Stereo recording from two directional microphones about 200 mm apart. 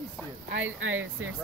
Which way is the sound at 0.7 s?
80° right.